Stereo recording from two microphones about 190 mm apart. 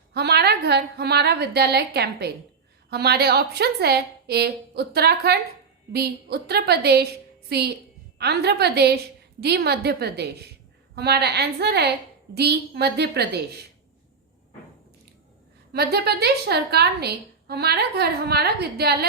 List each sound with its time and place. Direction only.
0.1 s a woman's voice: 60° right (ahead or behind)
15.7 s a woman's voice: 60° right (ahead or behind)